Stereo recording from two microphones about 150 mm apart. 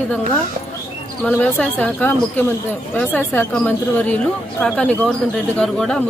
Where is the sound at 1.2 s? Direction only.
10° left (ahead or behind).